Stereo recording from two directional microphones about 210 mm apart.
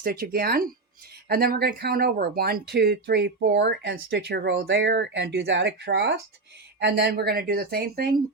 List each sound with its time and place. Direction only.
0.0 s speech: 45° right (ahead or behind)